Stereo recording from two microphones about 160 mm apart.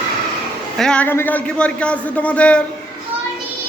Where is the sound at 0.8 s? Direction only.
5° left (ahead or behind).